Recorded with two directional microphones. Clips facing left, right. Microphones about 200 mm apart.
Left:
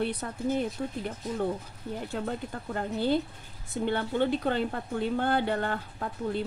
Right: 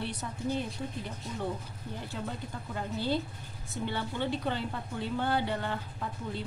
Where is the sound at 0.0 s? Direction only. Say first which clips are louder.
Left 5 dB; 55° left (ahead or behind).